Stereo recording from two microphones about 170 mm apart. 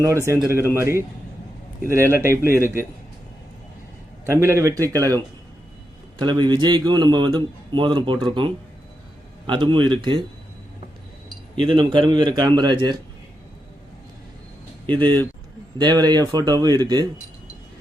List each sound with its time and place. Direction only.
0.3 s speech: 15° right (ahead or behind)
4.3 s speech: 15° right (ahead or behind)
6.1 s a man's voice: 25° right (ahead or behind)
11.6 s a man's voice: 30° right (ahead or behind)
14.8 s a man's voice: 30° right (ahead or behind)